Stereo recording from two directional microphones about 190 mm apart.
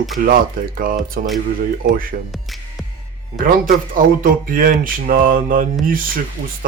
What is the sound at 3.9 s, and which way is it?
Mantra, 45° right (ahead or behind).